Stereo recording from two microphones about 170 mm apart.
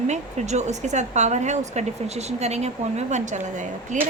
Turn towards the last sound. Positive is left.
turn(degrees=-45)  # may be behind; listen again after turning